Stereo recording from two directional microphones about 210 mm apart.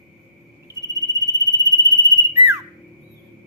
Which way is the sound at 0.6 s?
15° right (ahead or behind).